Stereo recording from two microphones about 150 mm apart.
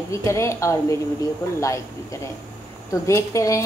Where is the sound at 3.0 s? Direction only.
20° left (ahead or behind).